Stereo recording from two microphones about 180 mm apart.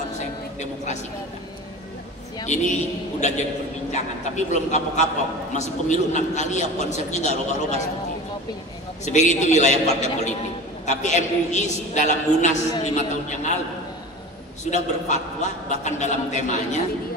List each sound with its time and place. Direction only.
2.4 s a man's voice: 40° left (ahead or behind)
9.0 s a man's voice: 40° left (ahead or behind)
14.7 s a man's voice: 40° left (ahead or behind)